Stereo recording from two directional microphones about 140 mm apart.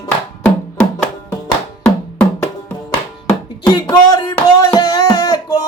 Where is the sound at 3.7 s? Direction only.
30° left (ahead or behind).